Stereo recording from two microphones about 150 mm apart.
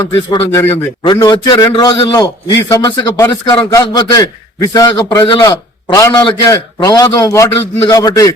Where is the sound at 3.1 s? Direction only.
20° left (ahead or behind).